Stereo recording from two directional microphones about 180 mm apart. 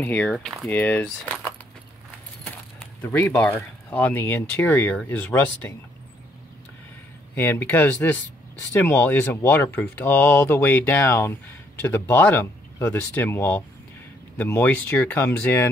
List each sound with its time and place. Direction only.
0.0 s speech: 10° left (ahead or behind)
3.0 s speech: 10° left (ahead or behind)
7.3 s speech: 10° left (ahead or behind)